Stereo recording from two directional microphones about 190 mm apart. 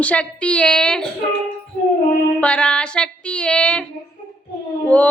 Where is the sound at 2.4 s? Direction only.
5° left (ahead or behind).